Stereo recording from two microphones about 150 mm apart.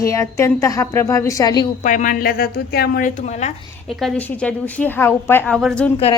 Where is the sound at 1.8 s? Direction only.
55° left (ahead or behind).